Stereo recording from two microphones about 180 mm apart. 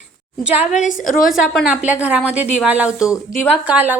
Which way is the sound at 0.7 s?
45° left (ahead or behind).